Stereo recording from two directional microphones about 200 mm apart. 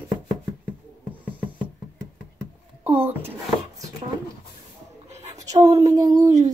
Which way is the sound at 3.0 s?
10° right (ahead or behind).